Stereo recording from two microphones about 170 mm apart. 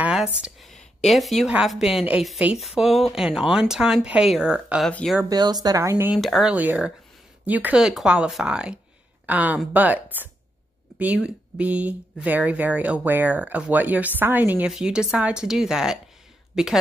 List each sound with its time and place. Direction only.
0.0 s a sound: 5° right (ahead or behind)
0.4 s a woman's voice: centre (ahead or behind)
5.3 s speech: 25° right (ahead or behind)
6.1 s speech: centre (ahead or behind)